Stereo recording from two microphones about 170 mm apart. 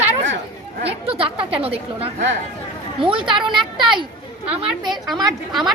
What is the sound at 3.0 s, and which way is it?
Speech, 30° right (ahead or behind).